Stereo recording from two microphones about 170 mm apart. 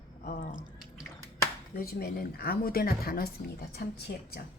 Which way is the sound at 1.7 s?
60° left (ahead or behind).